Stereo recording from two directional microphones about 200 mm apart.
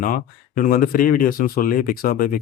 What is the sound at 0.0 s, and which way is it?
Speech, 45° left (ahead or behind).